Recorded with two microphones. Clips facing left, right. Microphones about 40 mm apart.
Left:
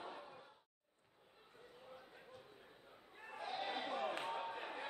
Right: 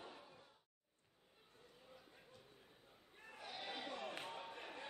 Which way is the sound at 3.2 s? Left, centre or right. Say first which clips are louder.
Left 7 dB; centre.